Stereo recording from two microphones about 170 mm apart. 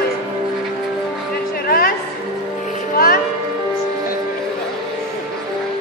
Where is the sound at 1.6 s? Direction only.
60° left (ahead or behind).